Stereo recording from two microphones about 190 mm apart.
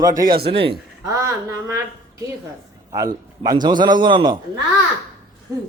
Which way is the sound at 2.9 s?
20° right (ahead or behind).